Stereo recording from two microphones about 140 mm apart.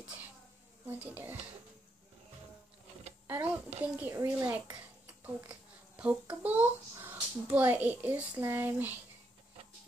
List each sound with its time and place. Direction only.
0.8 s speech: 15° right (ahead or behind)
3.3 s a child's voice: 15° right (ahead or behind)
5.2 s a child's voice: 10° right (ahead or behind)